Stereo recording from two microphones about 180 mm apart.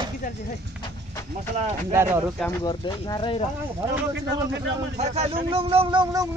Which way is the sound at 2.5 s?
25° left (ahead or behind).